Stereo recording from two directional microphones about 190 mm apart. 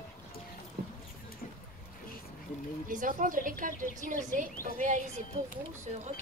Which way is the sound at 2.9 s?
45° right (ahead or behind).